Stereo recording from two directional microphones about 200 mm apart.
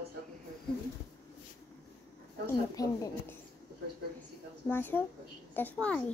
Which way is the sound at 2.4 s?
20° left (ahead or behind).